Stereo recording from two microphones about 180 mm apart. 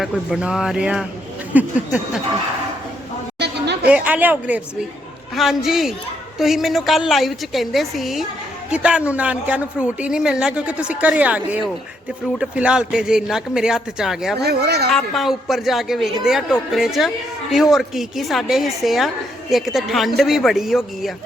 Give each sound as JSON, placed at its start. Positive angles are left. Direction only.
{"t": 0.0, "sound": "a woman's voice", "side_deg": -5}
{"t": 3.3, "sound": "chatter", "side_deg": -70}
{"t": 3.8, "sound": "a woman's voice", "side_deg": -5}
{"t": 14.3, "sound": "speech", "side_deg": -65}
{"t": 14.8, "sound": "a woman's voice", "side_deg": 0}